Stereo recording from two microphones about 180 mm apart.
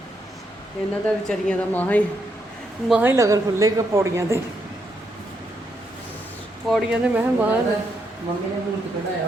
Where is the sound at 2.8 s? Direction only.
10° right (ahead or behind).